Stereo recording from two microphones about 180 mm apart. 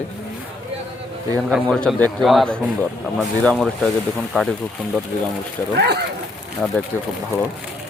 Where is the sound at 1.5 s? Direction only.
Centre (ahead or behind).